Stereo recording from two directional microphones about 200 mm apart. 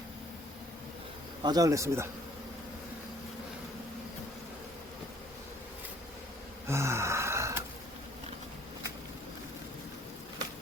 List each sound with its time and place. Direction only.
1.5 s speech: 20° right (ahead or behind)
6.7 s gasp: 15° right (ahead or behind)